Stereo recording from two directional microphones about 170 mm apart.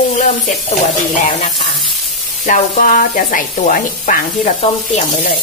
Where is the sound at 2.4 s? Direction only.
50° left (ahead or behind).